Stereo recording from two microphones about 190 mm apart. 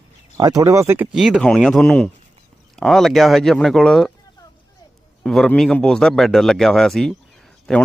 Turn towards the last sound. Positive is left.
turn(degrees=0)  # may be behind; listen again after turning